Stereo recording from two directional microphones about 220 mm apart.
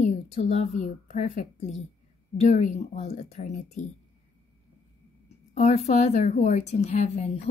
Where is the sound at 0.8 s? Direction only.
35° left (ahead or behind).